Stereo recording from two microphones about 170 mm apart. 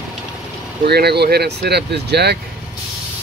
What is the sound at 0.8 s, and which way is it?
Speech, 70° right (ahead or behind).